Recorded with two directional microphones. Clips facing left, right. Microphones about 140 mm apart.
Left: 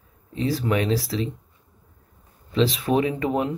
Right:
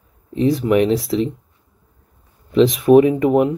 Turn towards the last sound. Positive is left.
turn(degrees=-15)  # may be behind; listen again after turning